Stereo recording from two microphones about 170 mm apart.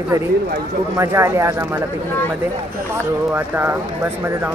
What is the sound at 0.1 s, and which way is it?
Speech, 15° right (ahead or behind).